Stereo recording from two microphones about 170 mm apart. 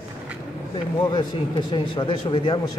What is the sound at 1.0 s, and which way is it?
Speech, 25° left (ahead or behind).